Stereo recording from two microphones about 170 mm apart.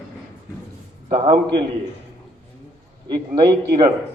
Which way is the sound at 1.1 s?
35° right (ahead or behind).